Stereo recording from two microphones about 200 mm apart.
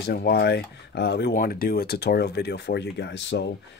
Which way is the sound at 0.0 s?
55° left (ahead or behind).